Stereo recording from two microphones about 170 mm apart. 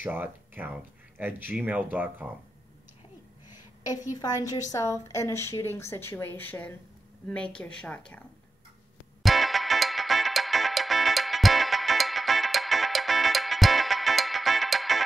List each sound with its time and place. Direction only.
0.0 s speech: 10° right (ahead or behind)
4.2 s a woman's voice: 20° left (ahead or behind)
9.2 s music: centre (ahead or behind)